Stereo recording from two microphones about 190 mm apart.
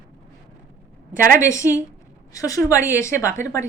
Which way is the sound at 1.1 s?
45° right (ahead or behind).